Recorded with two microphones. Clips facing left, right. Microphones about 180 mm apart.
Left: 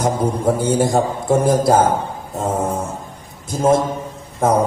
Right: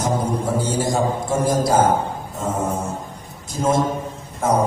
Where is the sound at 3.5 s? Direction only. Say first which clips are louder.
Left 5 dB; 55° left (ahead or behind).